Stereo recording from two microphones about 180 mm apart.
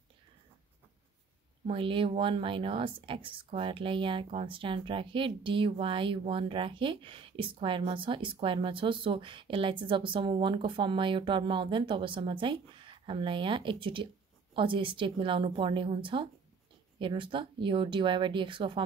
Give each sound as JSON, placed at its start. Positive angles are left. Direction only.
{"t": 1.7, "sound": "speech", "side_deg": -30}